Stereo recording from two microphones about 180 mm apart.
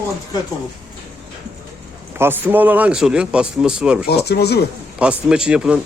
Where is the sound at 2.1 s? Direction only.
10° right (ahead or behind).